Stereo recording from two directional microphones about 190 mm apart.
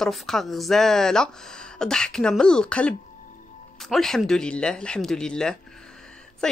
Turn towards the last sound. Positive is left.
turn(degrees=5)  # may be behind; listen again after turning